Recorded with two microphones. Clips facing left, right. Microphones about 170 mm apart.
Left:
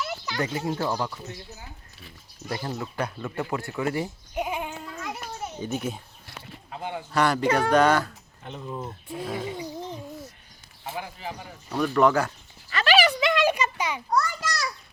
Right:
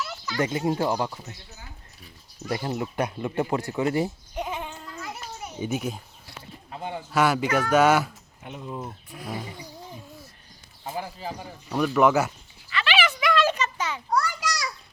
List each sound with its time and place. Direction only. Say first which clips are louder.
0.3 s speech: right 4 dB; 25° right (ahead or behind)
2.5 s speech: right 3 dB; 20° right (ahead or behind)
4.4 s sheep: left 3 dB; 10° left (ahead or behind)
4.8 s a sound: left 2 dB; centre (ahead or behind)
5.5 s speech: right 3 dB; 10° right (ahead or behind)
7.1 s speech: even; 5° right (ahead or behind)
9.0 s roaring cats: left 4 dB; 25° left (ahead or behind)
10.9 s speech: right 2 dB; 35° right (ahead or behind)
11.7 s speech: right 1 dB; 10° right (ahead or behind)
12.7 s clip-clop: left 4 dB; 40° left (ahead or behind)
13.1 s a sound: even; 25° left (ahead or behind)
13.4 s a sound: left 1 dB; 10° left (ahead or behind)
14.1 s a sound: right 1 dB; 15° right (ahead or behind)